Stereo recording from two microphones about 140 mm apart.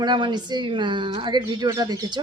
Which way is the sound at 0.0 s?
30° right (ahead or behind).